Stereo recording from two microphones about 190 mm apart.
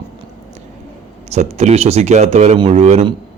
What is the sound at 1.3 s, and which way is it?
Speech, 35° right (ahead or behind).